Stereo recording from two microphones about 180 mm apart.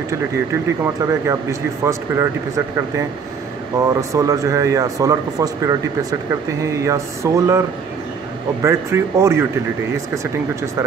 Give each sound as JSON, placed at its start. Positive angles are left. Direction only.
{"t": 1.0, "sound": "speech", "side_deg": -15}
{"t": 3.8, "sound": "speech", "side_deg": -20}
{"t": 8.6, "sound": "speech", "side_deg": -15}